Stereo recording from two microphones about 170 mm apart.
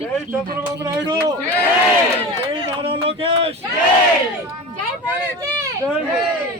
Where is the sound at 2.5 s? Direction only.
35° right (ahead or behind).